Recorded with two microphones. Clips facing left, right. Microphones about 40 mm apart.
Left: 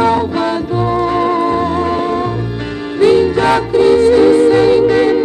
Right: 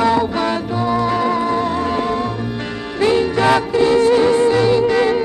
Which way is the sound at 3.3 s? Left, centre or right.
Left.